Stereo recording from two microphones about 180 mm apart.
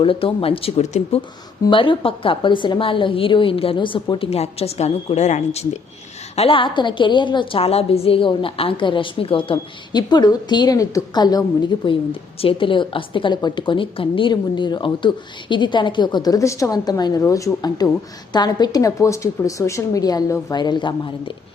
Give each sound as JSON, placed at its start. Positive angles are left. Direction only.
{"t": 0.0, "sound": "a woman's voice", "side_deg": 30}